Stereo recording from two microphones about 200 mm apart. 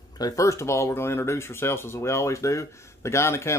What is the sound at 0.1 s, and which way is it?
Speech, 20° left (ahead or behind).